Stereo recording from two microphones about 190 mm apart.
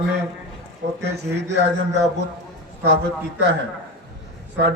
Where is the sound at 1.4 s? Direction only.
65° right (ahead or behind).